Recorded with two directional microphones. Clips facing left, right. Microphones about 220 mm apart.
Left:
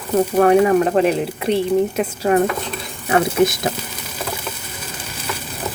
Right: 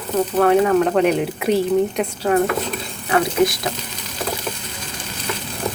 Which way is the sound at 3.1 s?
25° left (ahead or behind).